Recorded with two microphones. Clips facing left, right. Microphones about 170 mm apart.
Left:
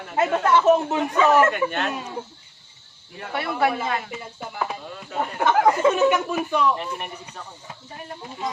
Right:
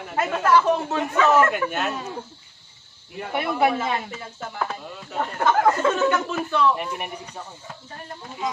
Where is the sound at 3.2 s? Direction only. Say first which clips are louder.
Right 2 dB; 15° right (ahead or behind).